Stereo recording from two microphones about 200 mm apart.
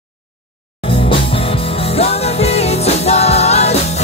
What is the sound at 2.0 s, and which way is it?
Music, 30° left (ahead or behind).